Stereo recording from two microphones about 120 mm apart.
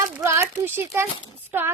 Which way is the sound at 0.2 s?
20° right (ahead or behind).